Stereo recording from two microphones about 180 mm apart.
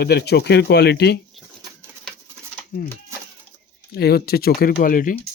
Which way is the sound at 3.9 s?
60° left (ahead or behind).